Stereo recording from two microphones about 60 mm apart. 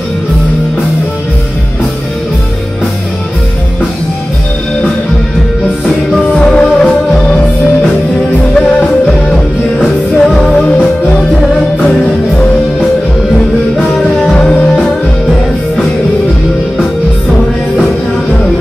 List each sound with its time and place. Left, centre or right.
6.4 s music: centre
8.5 s music: centre